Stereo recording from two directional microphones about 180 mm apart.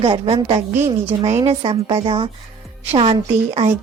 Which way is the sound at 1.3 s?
35° right (ahead or behind).